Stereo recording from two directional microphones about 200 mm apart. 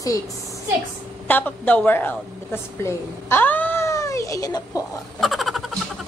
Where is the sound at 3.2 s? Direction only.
10° left (ahead or behind).